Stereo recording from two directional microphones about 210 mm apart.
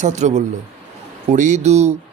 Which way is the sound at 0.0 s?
35° right (ahead or behind).